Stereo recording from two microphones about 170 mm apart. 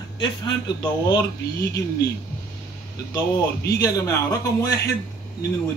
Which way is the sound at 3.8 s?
20° left (ahead or behind).